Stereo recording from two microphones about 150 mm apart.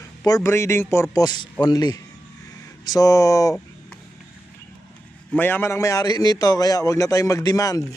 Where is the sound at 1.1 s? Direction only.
30° left (ahead or behind).